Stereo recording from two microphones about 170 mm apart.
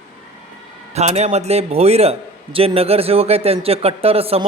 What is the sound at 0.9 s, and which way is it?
A man's voice, 40° right (ahead or behind).